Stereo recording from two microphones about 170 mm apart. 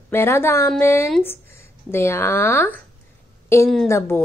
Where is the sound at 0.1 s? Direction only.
15° left (ahead or behind).